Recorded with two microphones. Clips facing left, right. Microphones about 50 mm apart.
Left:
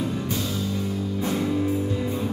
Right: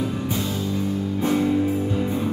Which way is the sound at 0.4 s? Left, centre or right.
Right.